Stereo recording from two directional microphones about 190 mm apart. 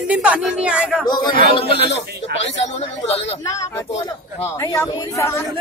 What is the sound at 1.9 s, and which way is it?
Speech, 70° left (ahead or behind).